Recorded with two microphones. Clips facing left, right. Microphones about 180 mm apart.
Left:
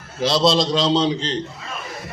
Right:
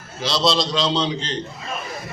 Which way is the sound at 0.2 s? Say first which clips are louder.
Left 3 dB; 55° left (ahead or behind).